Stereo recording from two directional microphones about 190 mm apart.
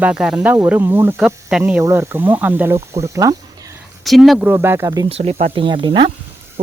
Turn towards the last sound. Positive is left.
turn(degrees=-25)  # may be behind; listen again after turning